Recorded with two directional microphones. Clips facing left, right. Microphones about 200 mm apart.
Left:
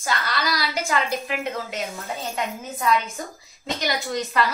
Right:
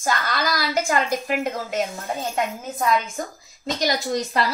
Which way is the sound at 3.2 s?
50° right (ahead or behind).